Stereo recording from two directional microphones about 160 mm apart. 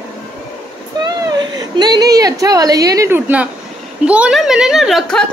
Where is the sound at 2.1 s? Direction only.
20° right (ahead or behind).